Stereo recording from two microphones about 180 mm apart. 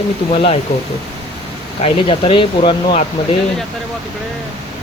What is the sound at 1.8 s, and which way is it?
Speech, 30° left (ahead or behind).